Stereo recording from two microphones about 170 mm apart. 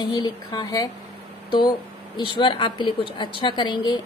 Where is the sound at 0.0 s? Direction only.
25° left (ahead or behind).